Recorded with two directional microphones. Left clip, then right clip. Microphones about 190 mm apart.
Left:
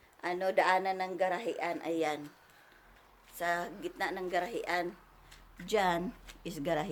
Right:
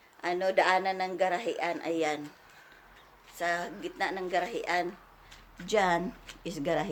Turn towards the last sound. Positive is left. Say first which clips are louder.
# right 3 dB
turn(degrees=20)  # may be behind; listen again after turning